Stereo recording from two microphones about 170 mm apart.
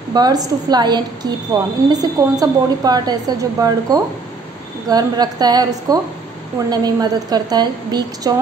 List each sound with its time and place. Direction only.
0.1 s a woman's voice: 25° right (ahead or behind)